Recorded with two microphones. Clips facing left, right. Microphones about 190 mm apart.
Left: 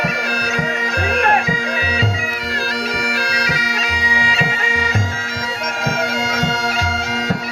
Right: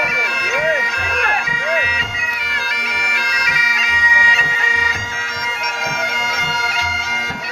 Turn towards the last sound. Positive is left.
turn(degrees=35)  # may be behind; listen again after turning